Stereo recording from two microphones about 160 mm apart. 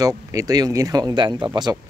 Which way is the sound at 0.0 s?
20° right (ahead or behind).